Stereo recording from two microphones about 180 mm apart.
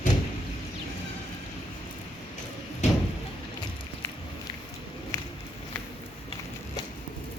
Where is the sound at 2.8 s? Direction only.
40° left (ahead or behind).